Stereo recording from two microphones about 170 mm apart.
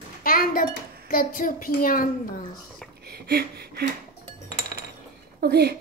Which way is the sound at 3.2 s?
70° right (ahead or behind).